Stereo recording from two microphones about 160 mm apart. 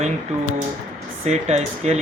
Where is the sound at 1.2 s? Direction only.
45° right (ahead or behind).